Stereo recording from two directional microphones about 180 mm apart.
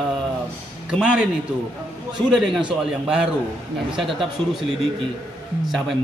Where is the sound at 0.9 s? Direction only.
5° right (ahead or behind).